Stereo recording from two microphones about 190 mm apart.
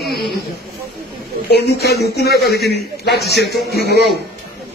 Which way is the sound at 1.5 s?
55° left (ahead or behind).